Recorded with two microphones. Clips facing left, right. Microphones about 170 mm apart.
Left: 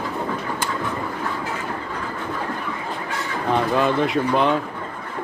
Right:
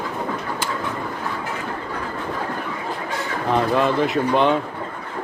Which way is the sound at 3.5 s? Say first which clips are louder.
Right 1 dB; centre (ahead or behind).